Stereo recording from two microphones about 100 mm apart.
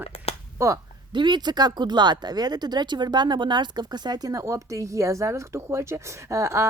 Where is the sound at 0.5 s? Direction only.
30° right (ahead or behind).